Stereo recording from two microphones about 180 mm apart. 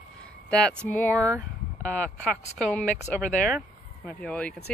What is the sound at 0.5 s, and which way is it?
Speech, 5° left (ahead or behind).